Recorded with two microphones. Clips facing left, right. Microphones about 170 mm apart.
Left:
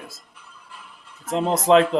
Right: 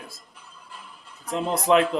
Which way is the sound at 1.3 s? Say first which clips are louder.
Left 4 dB; 25° left (ahead or behind).